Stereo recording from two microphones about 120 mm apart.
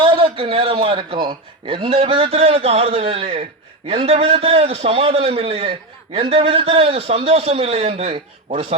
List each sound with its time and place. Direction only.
0.0 s a man's voice: 45° right (ahead or behind)